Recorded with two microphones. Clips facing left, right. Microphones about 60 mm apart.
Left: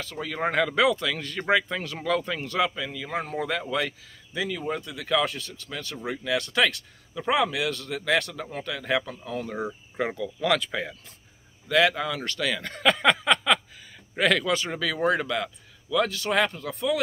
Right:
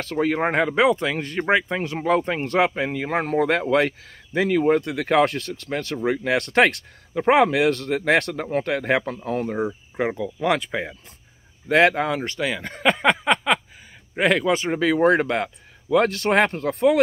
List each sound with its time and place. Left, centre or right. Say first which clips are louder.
0.0 s speech: right 8 dB; right
0.5 s speech: even; right
9.9 s speech: right 4 dB; right
11.7 s a man's voice: right 5 dB; right
12.2 s a man's voice: right 3 dB; right